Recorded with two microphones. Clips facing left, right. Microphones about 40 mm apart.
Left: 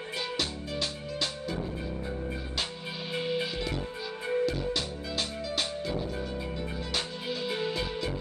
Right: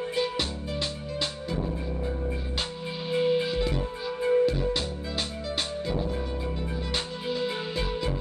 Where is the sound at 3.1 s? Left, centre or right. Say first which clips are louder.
Right 7 dB; centre.